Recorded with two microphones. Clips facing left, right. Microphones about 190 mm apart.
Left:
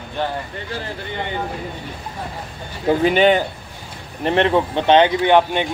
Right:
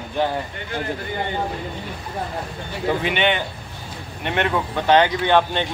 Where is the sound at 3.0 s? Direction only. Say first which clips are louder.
Left 7 dB; 40° left (ahead or behind); by 5.6 s 15° left (ahead or behind).